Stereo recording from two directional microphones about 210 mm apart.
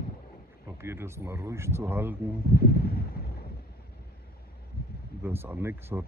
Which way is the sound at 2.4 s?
45° left (ahead or behind).